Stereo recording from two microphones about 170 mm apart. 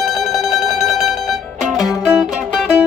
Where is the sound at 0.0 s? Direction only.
Centre (ahead or behind).